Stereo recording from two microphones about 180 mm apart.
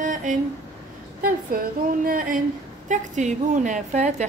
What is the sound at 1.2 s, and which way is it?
A woman's voice, 55° right (ahead or behind).